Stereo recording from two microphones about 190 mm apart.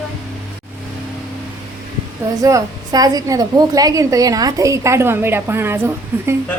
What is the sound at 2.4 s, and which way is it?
A woman's voice, 20° right (ahead or behind).